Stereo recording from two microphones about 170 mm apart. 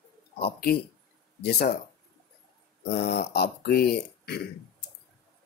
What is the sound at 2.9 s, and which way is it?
Speech, 70° left (ahead or behind).